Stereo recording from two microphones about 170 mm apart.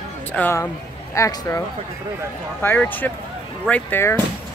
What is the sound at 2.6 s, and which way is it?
Speech, 10° left (ahead or behind).